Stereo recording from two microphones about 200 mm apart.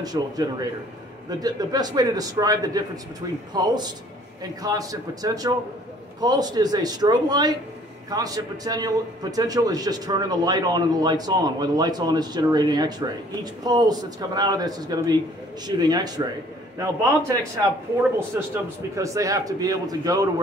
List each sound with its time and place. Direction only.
0.0 s a man's voice: 20° right (ahead or behind)
18.9 s a man's voice: 15° right (ahead or behind)